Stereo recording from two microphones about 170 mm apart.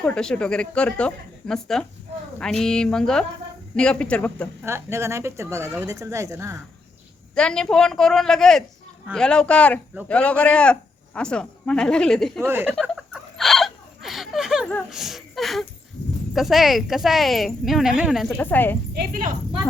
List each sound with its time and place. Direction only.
0.0 s speech: 5° left (ahead or behind)
4.6 s speech: 15° right (ahead or behind)
7.3 s speech: 5° left (ahead or behind)
12.5 s speech: 15° right (ahead or behind)
12.9 s a sound: centre (ahead or behind)
14.7 s speech: centre (ahead or behind)
18.3 s speech: 10° left (ahead or behind)
18.9 s speech: 55° right (ahead or behind)